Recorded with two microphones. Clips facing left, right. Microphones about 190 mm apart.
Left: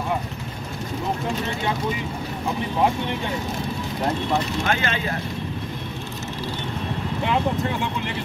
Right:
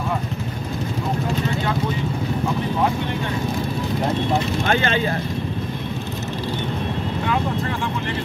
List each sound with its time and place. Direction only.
4.6 s speech: 30° right (ahead or behind)